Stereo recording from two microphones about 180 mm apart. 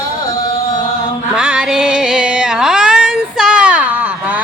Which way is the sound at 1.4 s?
5° right (ahead or behind).